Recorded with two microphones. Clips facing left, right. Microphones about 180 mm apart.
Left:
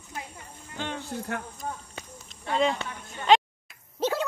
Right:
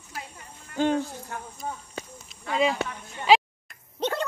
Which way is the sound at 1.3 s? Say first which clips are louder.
Left 6 dB; 70° left (ahead or behind).